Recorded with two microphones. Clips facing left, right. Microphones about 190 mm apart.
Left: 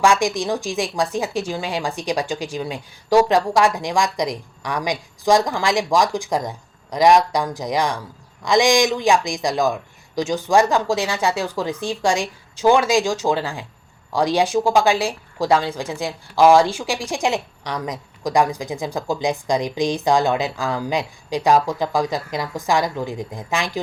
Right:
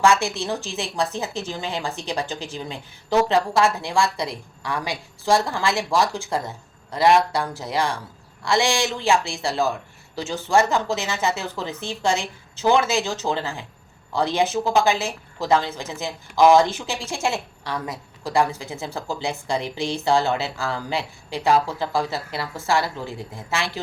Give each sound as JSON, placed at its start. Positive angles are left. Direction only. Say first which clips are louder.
{"t": 0.0, "sound": "speech", "louder": "left 2 dB", "side_deg": 15}